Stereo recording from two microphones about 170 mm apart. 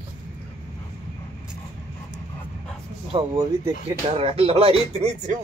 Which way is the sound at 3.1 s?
25° right (ahead or behind).